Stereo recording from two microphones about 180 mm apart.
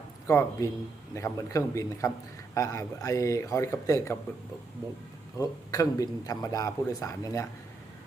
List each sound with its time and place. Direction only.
0.3 s speech: 15° left (ahead or behind)
5.4 s speech: 20° left (ahead or behind)